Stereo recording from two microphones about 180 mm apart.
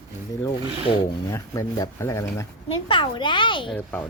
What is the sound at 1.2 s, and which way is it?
Speech, 15° left (ahead or behind).